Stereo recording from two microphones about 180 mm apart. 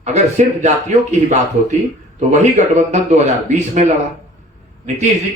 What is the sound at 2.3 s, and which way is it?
Speech, 40° right (ahead or behind).